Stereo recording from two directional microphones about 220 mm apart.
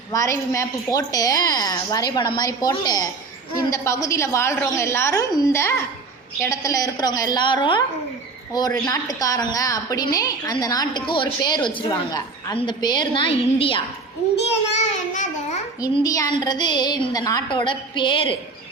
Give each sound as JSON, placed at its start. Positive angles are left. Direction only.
{"t": 0.1, "sound": "a woman's voice", "side_deg": 15}
{"t": 8.7, "sound": "a woman's voice", "side_deg": 10}
{"t": 15.8, "sound": "a woman's voice", "side_deg": 15}